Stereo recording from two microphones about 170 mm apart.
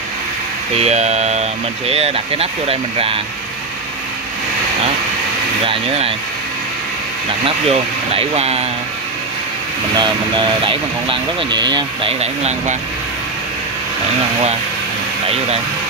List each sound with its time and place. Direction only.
0.7 s speech: 40° right (ahead or behind)
5.7 s speech: 35° right (ahead or behind)
7.4 s speech: 35° right (ahead or behind)
9.9 s speech: 25° right (ahead or behind)